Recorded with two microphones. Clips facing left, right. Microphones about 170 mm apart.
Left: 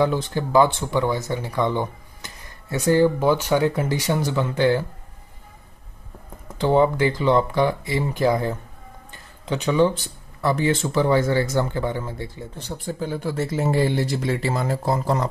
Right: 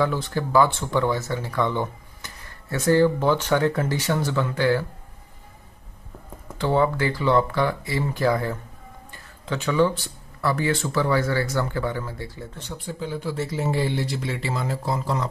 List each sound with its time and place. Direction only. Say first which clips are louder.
0.0 s speech: left 2 dB; 20° left (ahead or behind)
6.6 s speech: left 4 dB; 20° left (ahead or behind)
9.1 s a sound: left 3 dB; 20° left (ahead or behind)
10.4 s speech: left 3 dB; 20° left (ahead or behind)
12.5 s speech: left 5 dB; 40° left (ahead or behind)